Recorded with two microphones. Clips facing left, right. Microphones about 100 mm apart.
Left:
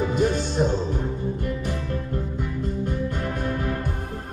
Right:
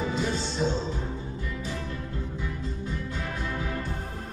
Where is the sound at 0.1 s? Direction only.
55° left (ahead or behind).